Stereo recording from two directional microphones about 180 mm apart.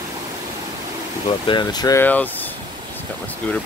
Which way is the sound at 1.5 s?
25° left (ahead or behind).